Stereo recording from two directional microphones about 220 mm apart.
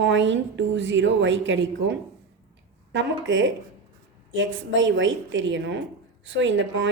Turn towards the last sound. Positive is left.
turn(degrees=-55)  # may be behind; listen again after turning